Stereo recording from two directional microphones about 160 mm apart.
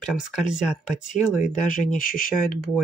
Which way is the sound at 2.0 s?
60° left (ahead or behind).